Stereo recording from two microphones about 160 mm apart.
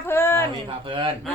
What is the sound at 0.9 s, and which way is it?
Speech, 30° right (ahead or behind).